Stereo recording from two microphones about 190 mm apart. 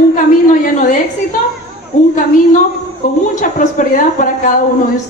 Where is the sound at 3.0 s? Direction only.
45° left (ahead or behind).